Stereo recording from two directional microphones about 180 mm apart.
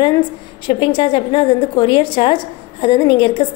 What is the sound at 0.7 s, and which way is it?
A woman's voice, 30° left (ahead or behind).